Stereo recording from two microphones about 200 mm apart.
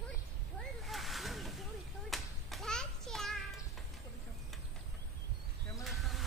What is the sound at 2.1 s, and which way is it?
Clapping, centre (ahead or behind).